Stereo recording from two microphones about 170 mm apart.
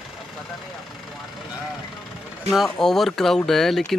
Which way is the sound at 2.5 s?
Centre (ahead or behind).